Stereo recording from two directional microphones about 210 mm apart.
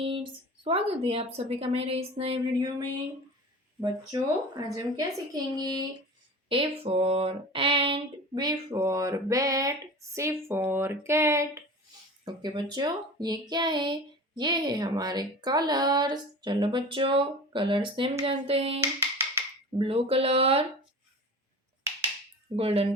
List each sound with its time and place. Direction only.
0.0 s speech: 25° right (ahead or behind)
6.5 s a sound: 25° right (ahead or behind)
12.2 s speech: 20° right (ahead or behind)
19.8 s speech: 25° right (ahead or behind)
22.5 s speech: 25° right (ahead or behind)